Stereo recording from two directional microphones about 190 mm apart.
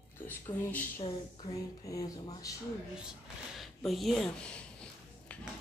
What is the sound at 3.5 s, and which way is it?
Speech, centre (ahead or behind).